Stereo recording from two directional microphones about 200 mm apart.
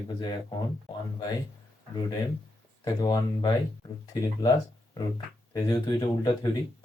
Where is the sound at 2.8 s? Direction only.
20° left (ahead or behind).